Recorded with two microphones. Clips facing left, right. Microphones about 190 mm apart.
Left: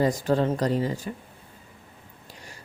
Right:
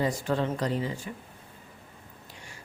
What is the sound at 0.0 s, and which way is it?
A woman's voice, 40° left (ahead or behind).